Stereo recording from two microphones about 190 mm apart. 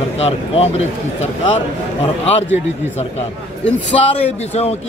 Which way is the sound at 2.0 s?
35° left (ahead or behind).